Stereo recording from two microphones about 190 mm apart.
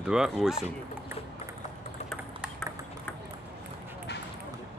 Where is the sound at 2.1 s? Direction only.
Centre (ahead or behind).